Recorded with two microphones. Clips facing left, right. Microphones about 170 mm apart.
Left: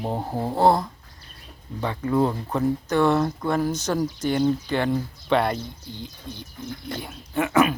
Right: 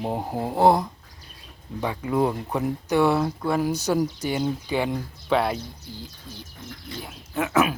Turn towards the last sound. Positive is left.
turn(degrees=-5)  # may be behind; listen again after turning